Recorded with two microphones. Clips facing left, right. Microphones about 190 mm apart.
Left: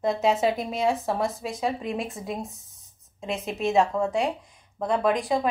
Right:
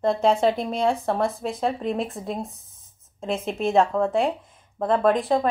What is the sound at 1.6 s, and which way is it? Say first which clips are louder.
Speech: right 3 dB; 35° right (ahead or behind).